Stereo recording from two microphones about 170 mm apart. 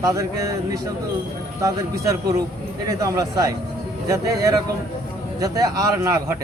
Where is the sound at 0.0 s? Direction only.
20° right (ahead or behind).